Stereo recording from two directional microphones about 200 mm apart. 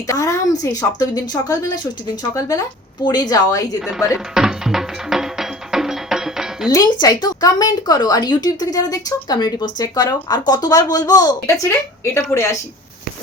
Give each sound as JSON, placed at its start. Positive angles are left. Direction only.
{"t": 0.1, "sound": "a woman's voice", "side_deg": 15}
{"t": 3.8, "sound": "speech", "side_deg": 0}
{"t": 4.4, "sound": "music", "side_deg": 0}
{"t": 6.7, "sound": "a woman's voice", "side_deg": 20}